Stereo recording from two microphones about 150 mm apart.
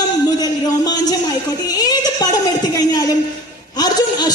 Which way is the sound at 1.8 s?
25° left (ahead or behind).